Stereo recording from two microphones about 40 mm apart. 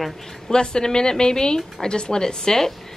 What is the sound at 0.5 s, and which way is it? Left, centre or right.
A woman's voice, centre.